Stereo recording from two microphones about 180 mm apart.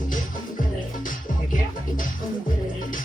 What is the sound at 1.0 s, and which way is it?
Music, 50° left (ahead or behind).